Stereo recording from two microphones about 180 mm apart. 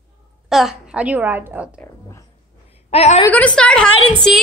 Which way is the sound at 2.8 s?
35° left (ahead or behind).